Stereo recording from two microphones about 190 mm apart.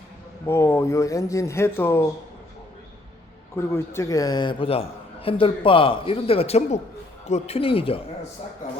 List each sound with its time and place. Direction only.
0.4 s speech: 10° left (ahead or behind)
3.5 s a man's voice: 15° left (ahead or behind); by 8.3 s 30° left (ahead or behind)